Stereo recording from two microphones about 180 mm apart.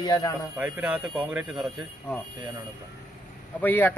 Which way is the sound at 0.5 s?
10° right (ahead or behind).